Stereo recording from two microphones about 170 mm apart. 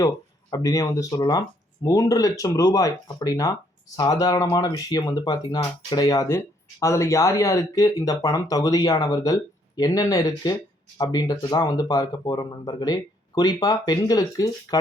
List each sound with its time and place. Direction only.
0.5 s speech: 20° left (ahead or behind)